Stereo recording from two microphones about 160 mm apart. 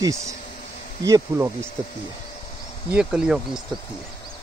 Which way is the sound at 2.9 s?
5° right (ahead or behind).